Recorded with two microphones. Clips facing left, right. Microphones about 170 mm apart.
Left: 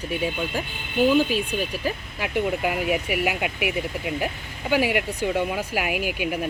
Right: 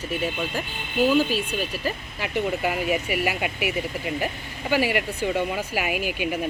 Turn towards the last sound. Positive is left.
turn(degrees=10)  # may be behind; listen again after turning